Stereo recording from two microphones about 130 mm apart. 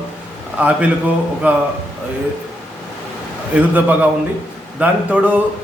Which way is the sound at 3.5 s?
10° right (ahead or behind).